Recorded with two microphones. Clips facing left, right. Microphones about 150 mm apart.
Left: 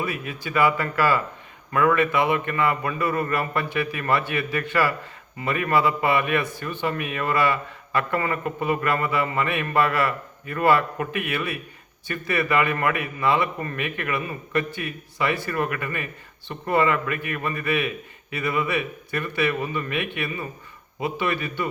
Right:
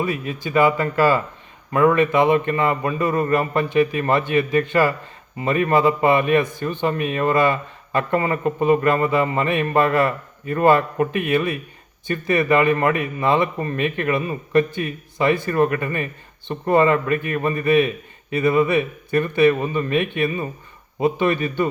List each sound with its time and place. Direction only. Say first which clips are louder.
0.0 s a man's voice: right 5 dB; 25° right (ahead or behind)